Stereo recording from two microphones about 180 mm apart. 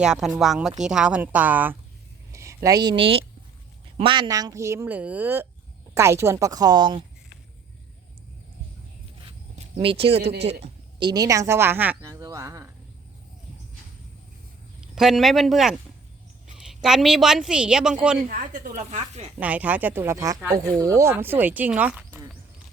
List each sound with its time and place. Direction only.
0.0 s a woman's voice: 5° right (ahead or behind); by 7.0 s 25° right (ahead or behind)
9.2 s zipper: 30° right (ahead or behind)
10.2 s speech: 70° right (ahead or behind)
11.0 s speech: 20° right (ahead or behind)
14.8 s a woman's voice: centre (ahead or behind)
18.3 s speech: 50° right (ahead or behind)
19.4 s speech: 10° right (ahead or behind)